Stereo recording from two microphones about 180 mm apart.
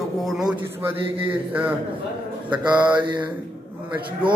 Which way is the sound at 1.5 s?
10° right (ahead or behind).